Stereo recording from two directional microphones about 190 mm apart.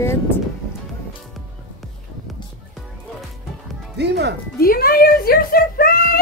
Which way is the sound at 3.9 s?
60° right (ahead or behind).